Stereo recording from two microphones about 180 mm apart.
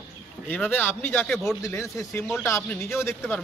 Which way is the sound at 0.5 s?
10° left (ahead or behind).